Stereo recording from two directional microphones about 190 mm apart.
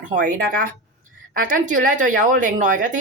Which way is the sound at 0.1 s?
45° right (ahead or behind).